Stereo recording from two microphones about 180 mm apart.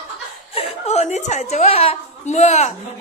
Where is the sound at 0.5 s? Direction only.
35° left (ahead or behind).